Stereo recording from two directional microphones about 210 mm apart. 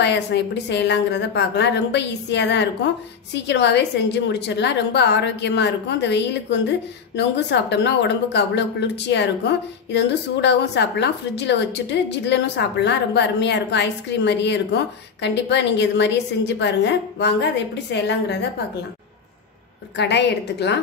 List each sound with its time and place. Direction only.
0.0 s speech: 55° left (ahead or behind)
20.0 s a woman's voice: 55° left (ahead or behind)